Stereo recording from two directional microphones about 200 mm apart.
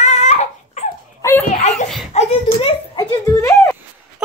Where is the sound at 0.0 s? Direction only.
35° left (ahead or behind).